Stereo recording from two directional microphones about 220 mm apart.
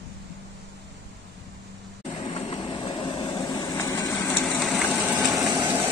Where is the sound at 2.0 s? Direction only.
20° left (ahead or behind); by 5.2 s 5° left (ahead or behind).